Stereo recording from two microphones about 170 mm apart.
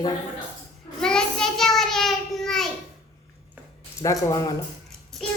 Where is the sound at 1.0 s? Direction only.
5° left (ahead or behind).